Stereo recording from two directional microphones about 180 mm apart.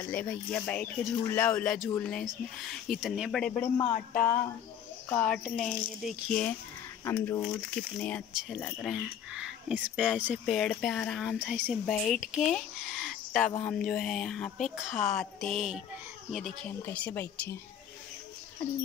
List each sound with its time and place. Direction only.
0.1 s speech: 5° left (ahead or behind)
4.1 s speech: 10° left (ahead or behind)
7.1 s speech: 15° left (ahead or behind)
11.3 s a woman's voice: 10° right (ahead or behind); by 17.6 s 10° left (ahead or behind)